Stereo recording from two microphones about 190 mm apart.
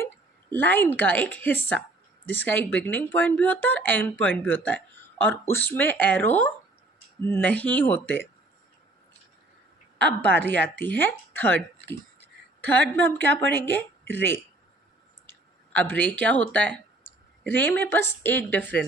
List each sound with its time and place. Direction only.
0.0 s speech: 10° left (ahead or behind)
10.2 s a woman's voice: 65° right (ahead or behind)
10.8 s speech: 10° left (ahead or behind)
12.6 s speech: 10° left (ahead or behind)